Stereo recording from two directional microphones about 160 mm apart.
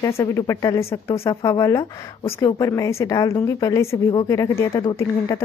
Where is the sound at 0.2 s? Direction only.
20° left (ahead or behind).